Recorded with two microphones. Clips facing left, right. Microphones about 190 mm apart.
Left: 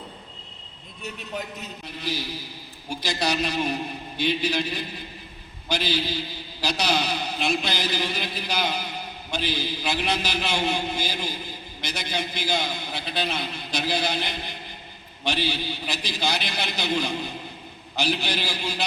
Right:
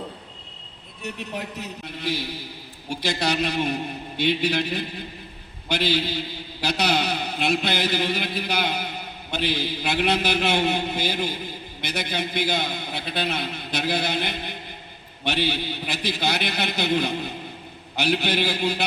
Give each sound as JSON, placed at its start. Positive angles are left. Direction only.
{"t": 1.0, "sound": "a man's voice", "side_deg": -70}
{"t": 3.1, "sound": "a man's voice", "side_deg": -60}